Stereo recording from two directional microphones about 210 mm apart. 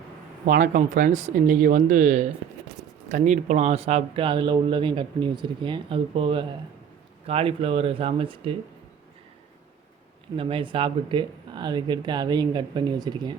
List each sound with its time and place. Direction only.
0.4 s speech: 40° right (ahead or behind); by 8.5 s 25° right (ahead or behind)
10.3 s speech: 25° right (ahead or behind)